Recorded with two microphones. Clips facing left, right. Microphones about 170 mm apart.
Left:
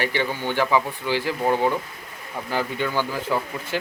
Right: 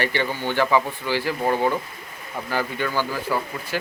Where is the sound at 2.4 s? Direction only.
15° left (ahead or behind).